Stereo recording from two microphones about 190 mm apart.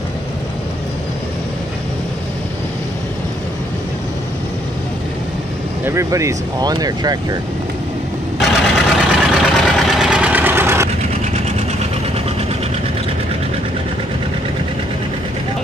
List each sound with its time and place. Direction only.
5.9 s speech: 15° right (ahead or behind)
8.4 s engine: centre (ahead or behind)